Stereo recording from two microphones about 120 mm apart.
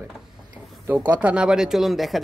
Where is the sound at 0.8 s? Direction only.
15° right (ahead or behind).